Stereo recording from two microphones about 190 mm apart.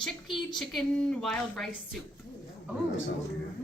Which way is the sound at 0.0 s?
Centre (ahead or behind).